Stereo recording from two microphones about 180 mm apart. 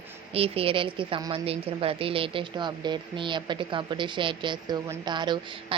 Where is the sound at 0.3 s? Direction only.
30° right (ahead or behind).